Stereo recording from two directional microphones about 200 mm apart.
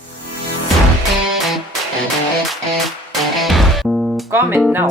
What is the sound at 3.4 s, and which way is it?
Music, centre (ahead or behind).